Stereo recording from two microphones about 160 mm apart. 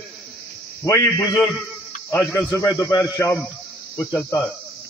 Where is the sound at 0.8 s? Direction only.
20° left (ahead or behind).